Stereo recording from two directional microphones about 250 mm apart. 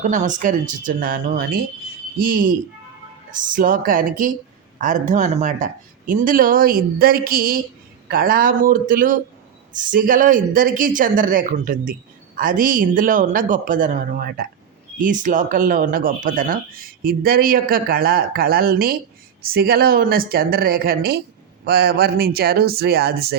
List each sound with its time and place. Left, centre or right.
0.1 s speech: right